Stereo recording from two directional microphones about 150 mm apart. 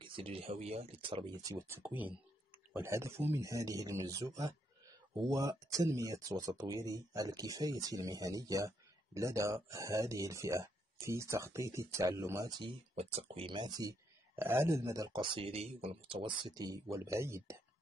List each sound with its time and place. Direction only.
0.0 s speech: 35° right (ahead or behind)
1.8 s speech: 10° right (ahead or behind); by 12.7 s 25° right (ahead or behind)
12.9 s speech: 45° right (ahead or behind); by 17.6 s 20° right (ahead or behind)